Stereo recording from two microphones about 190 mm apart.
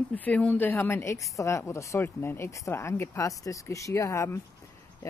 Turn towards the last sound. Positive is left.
turn(degrees=15)  # may be behind; listen again after turning